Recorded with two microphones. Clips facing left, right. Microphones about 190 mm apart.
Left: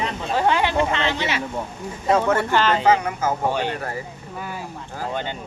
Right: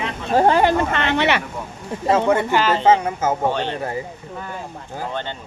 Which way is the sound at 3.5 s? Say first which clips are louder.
Even; 10° left (ahead or behind).